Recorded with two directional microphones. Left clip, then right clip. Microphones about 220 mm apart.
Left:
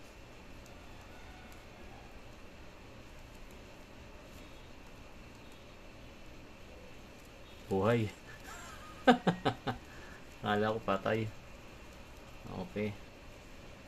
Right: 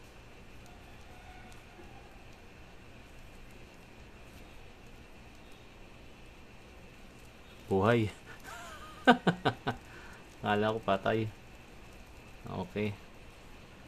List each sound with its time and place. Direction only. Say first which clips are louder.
7.7 s fowl: right 3 dB; 20° right (ahead or behind)
9.0 s a sound: right 2 dB; 20° right (ahead or behind)
10.4 s speech: right 2 dB; 15° right (ahead or behind)
12.5 s speech: right 3 dB; 25° right (ahead or behind)